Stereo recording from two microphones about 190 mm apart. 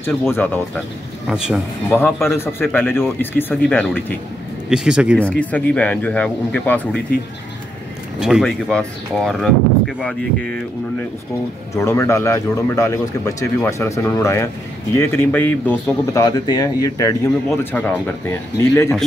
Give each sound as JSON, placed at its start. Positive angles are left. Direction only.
{"t": 0.0, "sound": "a man's voice", "side_deg": 10}
{"t": 1.3, "sound": "speech", "side_deg": -5}
{"t": 2.2, "sound": "a man's voice", "side_deg": 15}
{"t": 4.6, "sound": "speech", "side_deg": -5}
{"t": 5.2, "sound": "a man's voice", "side_deg": 5}
{"t": 8.2, "sound": "speech", "side_deg": 0}
{"t": 11.7, "sound": "a man's voice", "side_deg": 15}
{"t": 17.7, "sound": "a man's voice", "side_deg": 10}